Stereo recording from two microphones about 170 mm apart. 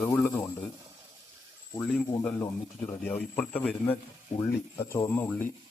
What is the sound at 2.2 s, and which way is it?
Speech, 15° left (ahead or behind).